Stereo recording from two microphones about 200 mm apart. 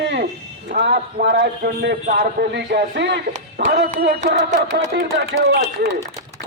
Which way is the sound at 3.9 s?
35° right (ahead or behind).